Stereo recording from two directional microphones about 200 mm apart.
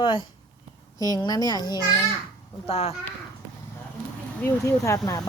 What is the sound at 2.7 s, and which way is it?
Speech, 30° left (ahead or behind).